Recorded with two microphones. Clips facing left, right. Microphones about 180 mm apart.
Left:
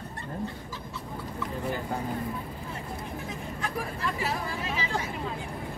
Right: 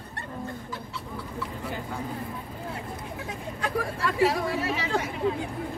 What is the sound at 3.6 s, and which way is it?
Hubbub, 75° right (ahead or behind).